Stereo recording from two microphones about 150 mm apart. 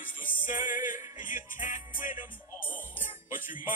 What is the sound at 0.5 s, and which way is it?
Music, 60° left (ahead or behind).